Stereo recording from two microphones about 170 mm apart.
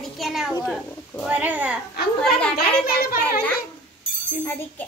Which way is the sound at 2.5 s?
65° left (ahead or behind).